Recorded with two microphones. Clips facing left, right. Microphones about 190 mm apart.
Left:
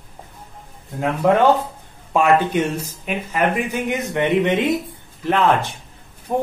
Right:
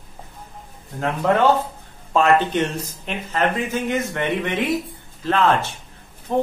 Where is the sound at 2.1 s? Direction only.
10° left (ahead or behind).